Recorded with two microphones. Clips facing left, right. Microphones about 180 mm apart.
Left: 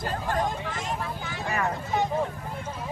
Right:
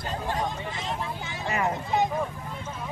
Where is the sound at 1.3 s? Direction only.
20° right (ahead or behind).